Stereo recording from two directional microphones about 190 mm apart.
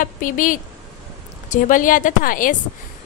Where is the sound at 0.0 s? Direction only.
45° left (ahead or behind).